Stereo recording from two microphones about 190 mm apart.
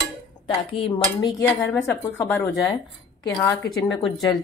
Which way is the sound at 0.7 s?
30° left (ahead or behind).